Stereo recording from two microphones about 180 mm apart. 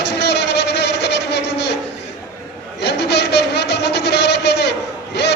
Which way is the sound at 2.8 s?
70° left (ahead or behind).